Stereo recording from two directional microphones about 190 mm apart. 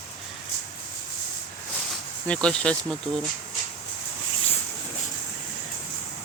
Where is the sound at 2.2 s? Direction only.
5° left (ahead or behind).